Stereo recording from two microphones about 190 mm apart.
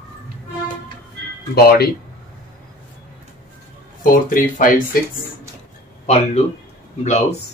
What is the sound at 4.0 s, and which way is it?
Speech, 45° left (ahead or behind).